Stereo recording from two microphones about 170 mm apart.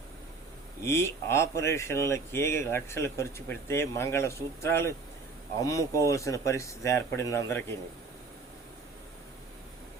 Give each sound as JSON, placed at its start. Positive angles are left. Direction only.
{"t": 0.9, "sound": "speech", "side_deg": 15}